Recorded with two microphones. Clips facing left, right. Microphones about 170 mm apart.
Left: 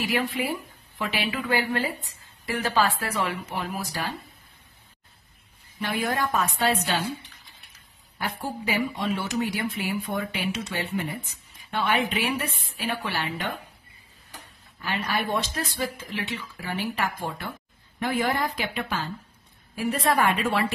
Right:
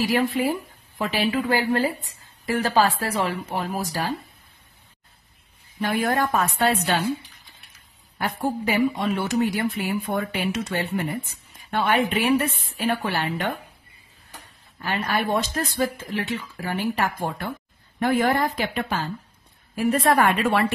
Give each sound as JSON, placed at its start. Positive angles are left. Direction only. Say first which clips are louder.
{"t": 0.0, "sound": "a woman's voice", "louder": "right 5 dB", "side_deg": -40}
{"t": 5.8, "sound": "a woman's voice", "louder": "right 4 dB", "side_deg": -50}
{"t": 7.1, "sound": "speech", "louder": "right 7 dB", "side_deg": -10}
{"t": 8.2, "sound": "a woman's voice", "louder": "right 6 dB", "side_deg": -55}
{"t": 14.8, "sound": "a woman's voice", "louder": "right 3 dB", "side_deg": -50}